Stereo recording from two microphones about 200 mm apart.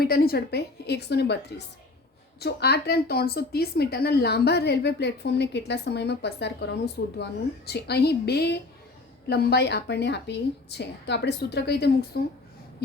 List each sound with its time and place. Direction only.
0.0 s a woman's voice: 50° left (ahead or behind)